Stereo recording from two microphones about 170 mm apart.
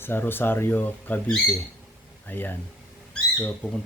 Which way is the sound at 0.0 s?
10° left (ahead or behind).